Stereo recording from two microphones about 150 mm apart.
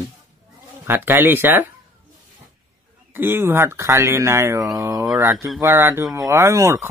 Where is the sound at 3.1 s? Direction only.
15° right (ahead or behind).